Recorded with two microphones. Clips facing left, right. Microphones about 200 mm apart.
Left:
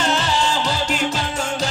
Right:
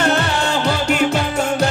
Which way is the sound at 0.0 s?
60° right (ahead or behind).